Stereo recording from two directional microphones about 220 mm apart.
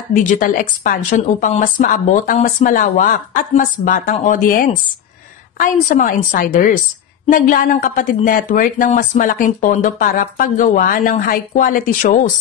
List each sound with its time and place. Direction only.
0.1 s speech: 40° left (ahead or behind)